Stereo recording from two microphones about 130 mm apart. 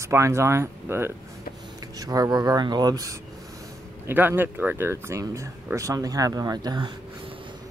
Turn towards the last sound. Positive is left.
turn(degrees=-35)  # may be behind; listen again after turning